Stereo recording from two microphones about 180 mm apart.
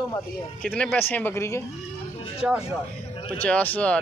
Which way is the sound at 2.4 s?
5° right (ahead or behind).